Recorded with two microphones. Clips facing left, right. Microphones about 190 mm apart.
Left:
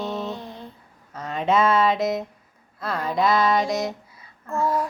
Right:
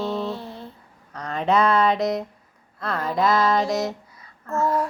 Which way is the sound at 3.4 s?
15° left (ahead or behind).